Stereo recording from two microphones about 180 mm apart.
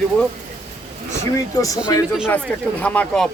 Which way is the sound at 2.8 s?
5° left (ahead or behind).